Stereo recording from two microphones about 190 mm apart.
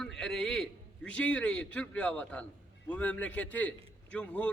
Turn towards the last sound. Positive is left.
turn(degrees=5)  # may be behind; listen again after turning